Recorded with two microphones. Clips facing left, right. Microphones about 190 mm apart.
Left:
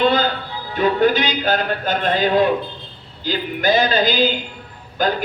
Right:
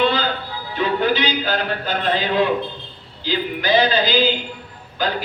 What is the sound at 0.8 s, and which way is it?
A man's voice, 45° left (ahead or behind).